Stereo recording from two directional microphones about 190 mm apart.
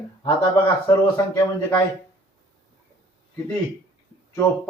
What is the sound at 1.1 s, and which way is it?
Speech, 15° left (ahead or behind).